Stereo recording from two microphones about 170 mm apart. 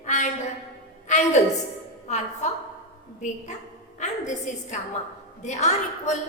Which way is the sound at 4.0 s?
45° left (ahead or behind).